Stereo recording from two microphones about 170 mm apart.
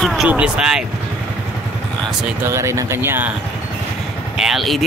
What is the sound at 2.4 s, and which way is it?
Speech, 15° right (ahead or behind).